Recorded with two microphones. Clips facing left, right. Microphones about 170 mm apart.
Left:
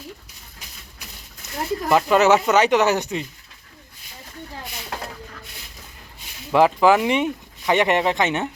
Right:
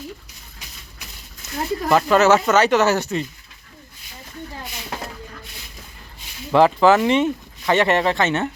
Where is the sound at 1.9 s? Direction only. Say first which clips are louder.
Right 1 dB; 10° left (ahead or behind).